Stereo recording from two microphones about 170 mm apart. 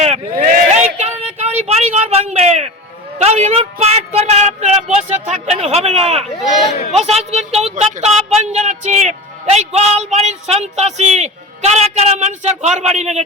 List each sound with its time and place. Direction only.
0.0 s a sound: 40° right (ahead or behind)
3.2 s speech: 40° right (ahead or behind)
6.4 s speech: centre (ahead or behind)
6.9 s speech: 40° right (ahead or behind)